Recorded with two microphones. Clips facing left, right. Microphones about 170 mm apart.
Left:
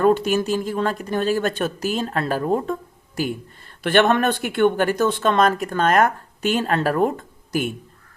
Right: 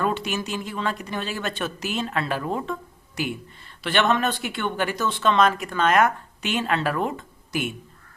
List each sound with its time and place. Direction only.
0.0 s a woman's voice: 45° left (ahead or behind)
3.8 s a woman's voice: 50° left (ahead or behind)